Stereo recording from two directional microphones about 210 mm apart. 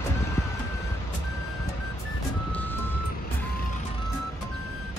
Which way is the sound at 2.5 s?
10° left (ahead or behind).